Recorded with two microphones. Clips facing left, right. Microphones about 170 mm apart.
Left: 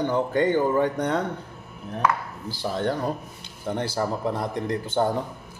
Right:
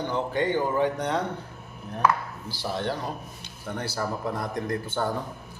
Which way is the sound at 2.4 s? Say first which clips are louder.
Left 4 dB; 50° left (ahead or behind).